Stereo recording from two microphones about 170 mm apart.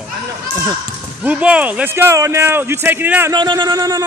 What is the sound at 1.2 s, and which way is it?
Speech, 5° right (ahead or behind).